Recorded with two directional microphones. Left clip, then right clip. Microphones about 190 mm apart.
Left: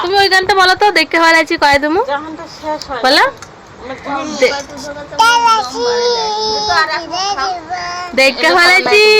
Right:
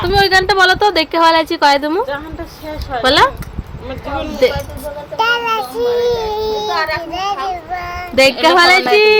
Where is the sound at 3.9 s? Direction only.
35° right (ahead or behind).